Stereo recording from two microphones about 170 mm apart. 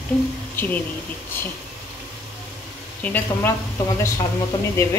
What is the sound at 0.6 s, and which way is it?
Speech, 10° left (ahead or behind).